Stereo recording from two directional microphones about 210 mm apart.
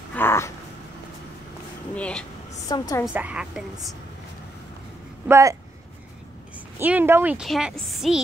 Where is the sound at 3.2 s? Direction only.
5° right (ahead or behind).